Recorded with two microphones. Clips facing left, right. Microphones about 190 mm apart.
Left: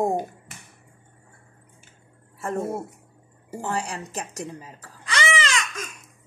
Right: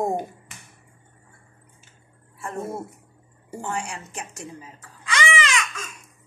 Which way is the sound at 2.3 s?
40° left (ahead or behind).